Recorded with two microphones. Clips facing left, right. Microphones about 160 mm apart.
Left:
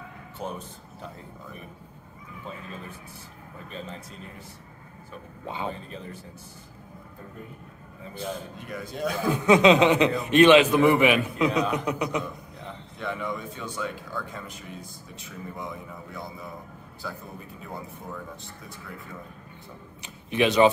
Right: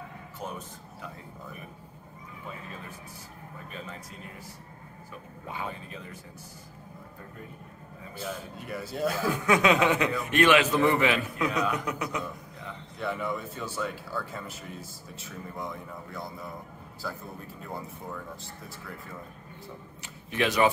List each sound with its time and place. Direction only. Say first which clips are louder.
3.7 s a man's voice: left 4 dB; 30° left (ahead or behind)
5.5 s speech: left 4 dB; 25° left (ahead or behind)
8.6 s speech: right 1 dB; 5° right (ahead or behind)
9.2 s a man's voice: left 7 dB; 25° left (ahead or behind)
13.0 s speech: even; 5° right (ahead or behind)
20.0 s speech: left 5 dB; 20° left (ahead or behind)